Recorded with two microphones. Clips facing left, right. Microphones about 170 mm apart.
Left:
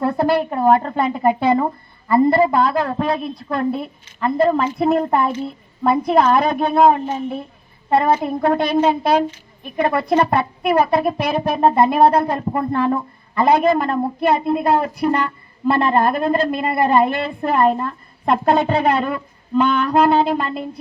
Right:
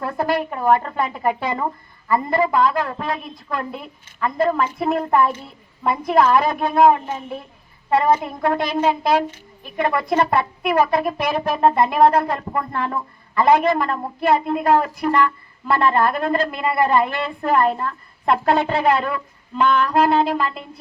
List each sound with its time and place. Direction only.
0.0 s a woman's voice: 30° left (ahead or behind)